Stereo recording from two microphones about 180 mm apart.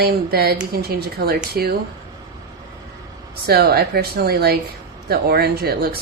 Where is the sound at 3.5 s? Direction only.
60° right (ahead or behind).